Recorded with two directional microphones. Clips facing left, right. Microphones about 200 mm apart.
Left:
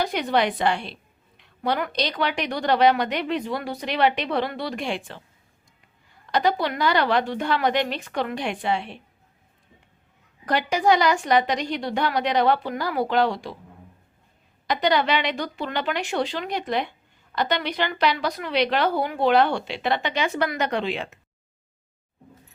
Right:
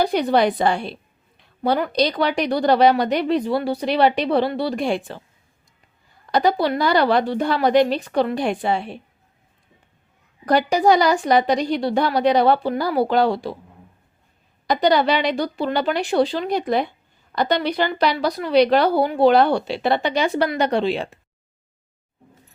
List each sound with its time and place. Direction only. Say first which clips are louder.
0.0 s a woman's voice: right 5 dB; 35° right (ahead or behind)
6.3 s a woman's voice: right 4 dB; 35° right (ahead or behind)
10.4 s a woman's voice: right 5 dB; 35° right (ahead or behind)
14.7 s a woman's voice: right 4 dB; 35° right (ahead or behind)